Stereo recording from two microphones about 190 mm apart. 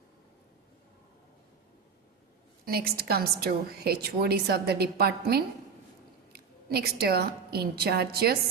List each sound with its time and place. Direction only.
2.6 s a woman's voice: 55° right (ahead or behind)